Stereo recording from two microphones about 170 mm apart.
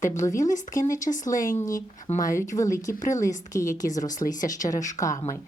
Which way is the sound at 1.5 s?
20° left (ahead or behind).